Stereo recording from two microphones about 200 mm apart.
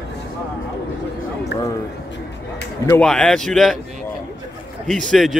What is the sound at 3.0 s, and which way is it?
Speech, 5° left (ahead or behind).